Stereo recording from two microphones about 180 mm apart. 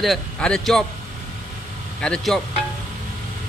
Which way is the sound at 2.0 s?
5° left (ahead or behind).